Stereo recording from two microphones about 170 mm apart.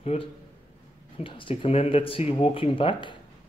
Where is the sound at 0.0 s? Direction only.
35° left (ahead or behind).